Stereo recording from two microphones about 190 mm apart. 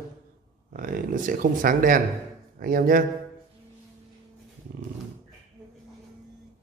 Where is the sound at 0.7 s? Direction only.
45° right (ahead or behind).